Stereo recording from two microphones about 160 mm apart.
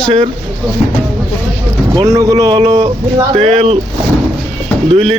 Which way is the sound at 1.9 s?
20° right (ahead or behind).